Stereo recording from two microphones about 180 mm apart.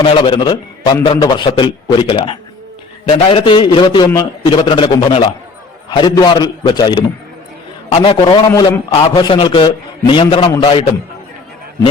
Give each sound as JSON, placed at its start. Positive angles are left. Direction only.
{"t": 0.0, "sound": "a man's voice", "side_deg": 30}